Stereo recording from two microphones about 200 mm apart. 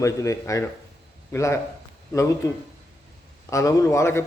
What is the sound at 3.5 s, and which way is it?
Speech, 15° left (ahead or behind).